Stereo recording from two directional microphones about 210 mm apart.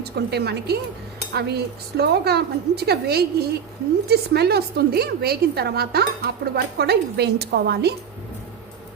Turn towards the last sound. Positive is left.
turn(degrees=-50)  # may be behind; listen again after turning